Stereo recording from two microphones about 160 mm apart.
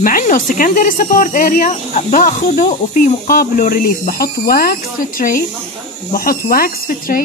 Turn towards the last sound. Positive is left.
turn(degrees=65)  # may be behind; listen again after turning